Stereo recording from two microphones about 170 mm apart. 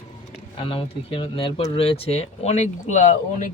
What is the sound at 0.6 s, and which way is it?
Speech, 30° left (ahead or behind).